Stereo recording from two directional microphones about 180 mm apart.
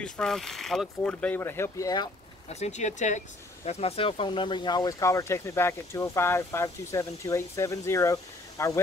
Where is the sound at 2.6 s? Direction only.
40° left (ahead or behind).